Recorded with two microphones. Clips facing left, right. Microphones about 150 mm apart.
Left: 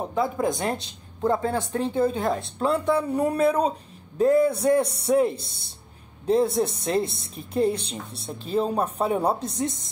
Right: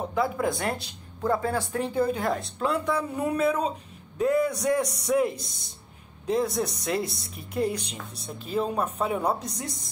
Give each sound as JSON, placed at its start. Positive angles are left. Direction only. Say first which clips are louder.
{"t": 0.1, "sound": "speech", "louder": "left 2 dB", "side_deg": 20}